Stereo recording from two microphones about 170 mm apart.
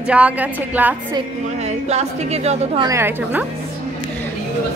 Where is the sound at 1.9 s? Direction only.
40° right (ahead or behind).